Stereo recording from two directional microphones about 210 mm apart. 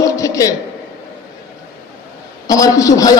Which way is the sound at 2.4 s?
15° left (ahead or behind).